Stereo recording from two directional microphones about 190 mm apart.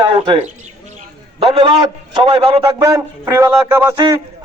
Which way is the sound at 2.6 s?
15° right (ahead or behind).